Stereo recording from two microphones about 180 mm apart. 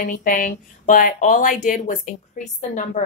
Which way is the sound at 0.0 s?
50° left (ahead or behind).